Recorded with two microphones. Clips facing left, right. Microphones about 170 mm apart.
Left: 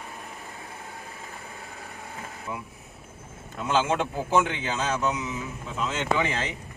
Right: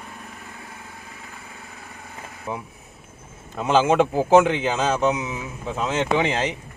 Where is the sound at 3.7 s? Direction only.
90° right; by 6.5 s 75° right (ahead or behind).